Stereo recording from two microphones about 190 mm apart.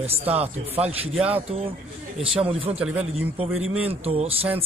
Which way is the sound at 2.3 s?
30° right (ahead or behind).